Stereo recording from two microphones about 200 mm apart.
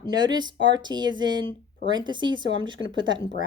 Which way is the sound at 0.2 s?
20° right (ahead or behind).